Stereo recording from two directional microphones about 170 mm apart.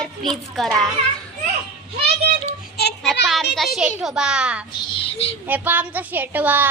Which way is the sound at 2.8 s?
70° left (ahead or behind).